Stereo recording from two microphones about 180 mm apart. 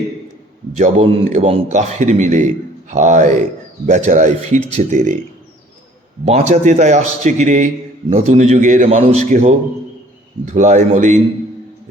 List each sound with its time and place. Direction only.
0.8 s a man's voice: 40° right (ahead or behind)
6.2 s a man's voice: 40° right (ahead or behind)